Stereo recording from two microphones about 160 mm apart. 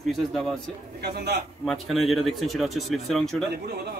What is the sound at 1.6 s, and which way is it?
Speech, centre (ahead or behind).